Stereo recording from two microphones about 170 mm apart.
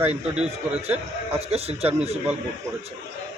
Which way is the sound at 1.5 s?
35° right (ahead or behind).